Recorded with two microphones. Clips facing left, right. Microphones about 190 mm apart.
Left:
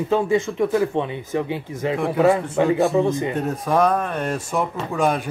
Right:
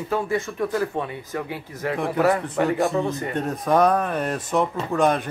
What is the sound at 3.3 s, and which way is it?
Speech, 5° left (ahead or behind).